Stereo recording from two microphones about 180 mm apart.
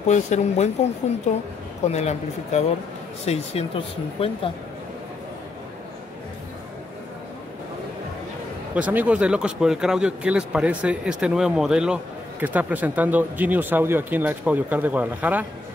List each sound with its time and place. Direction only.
0.0 s a woman's voice: 40° left (ahead or behind)
8.7 s speech: 10° right (ahead or behind)